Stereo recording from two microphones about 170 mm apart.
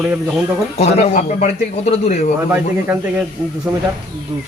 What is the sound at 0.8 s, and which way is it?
Speech, 40° left (ahead or behind).